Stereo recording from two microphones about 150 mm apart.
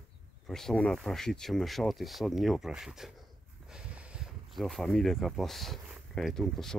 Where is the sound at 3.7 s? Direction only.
5° right (ahead or behind).